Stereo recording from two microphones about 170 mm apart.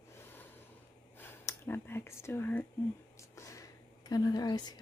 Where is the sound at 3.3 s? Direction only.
20° left (ahead or behind).